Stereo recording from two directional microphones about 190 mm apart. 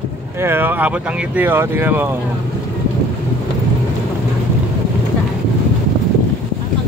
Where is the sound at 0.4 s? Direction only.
10° right (ahead or behind).